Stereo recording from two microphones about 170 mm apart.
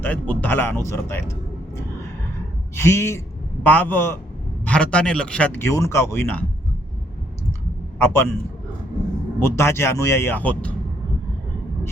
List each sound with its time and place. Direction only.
0.0 s speech: 10° left (ahead or behind)
7.9 s speech: 15° left (ahead or behind)
9.4 s speech: 15° left (ahead or behind)